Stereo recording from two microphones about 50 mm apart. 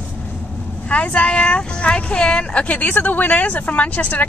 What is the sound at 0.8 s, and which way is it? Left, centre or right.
Speech, left.